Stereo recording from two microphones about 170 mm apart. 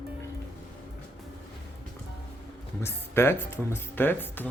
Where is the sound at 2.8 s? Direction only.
15° left (ahead or behind).